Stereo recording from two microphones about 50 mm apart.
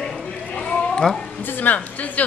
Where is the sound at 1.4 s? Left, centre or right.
Left.